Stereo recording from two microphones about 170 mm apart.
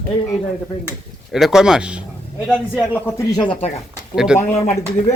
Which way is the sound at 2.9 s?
15° left (ahead or behind).